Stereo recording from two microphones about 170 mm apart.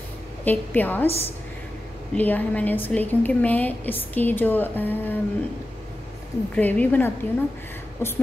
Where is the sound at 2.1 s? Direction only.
10° left (ahead or behind).